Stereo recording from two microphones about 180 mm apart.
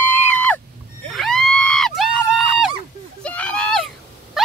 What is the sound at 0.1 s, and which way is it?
Screaming, 10° left (ahead or behind).